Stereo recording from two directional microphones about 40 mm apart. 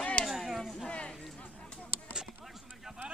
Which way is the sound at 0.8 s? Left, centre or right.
Left.